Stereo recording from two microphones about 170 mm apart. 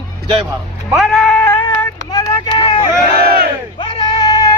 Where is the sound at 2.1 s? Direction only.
25° left (ahead or behind).